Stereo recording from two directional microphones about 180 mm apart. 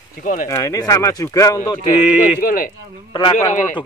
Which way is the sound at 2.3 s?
50° left (ahead or behind).